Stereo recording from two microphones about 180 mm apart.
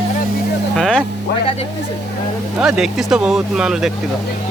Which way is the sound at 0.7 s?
5° left (ahead or behind).